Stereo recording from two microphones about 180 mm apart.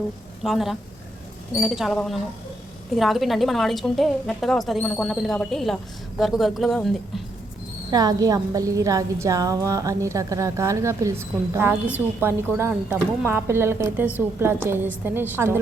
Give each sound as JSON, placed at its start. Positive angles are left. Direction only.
{"t": 0.4, "sound": "a woman's voice", "side_deg": 0}
{"t": 7.9, "sound": "a woman's voice", "side_deg": -20}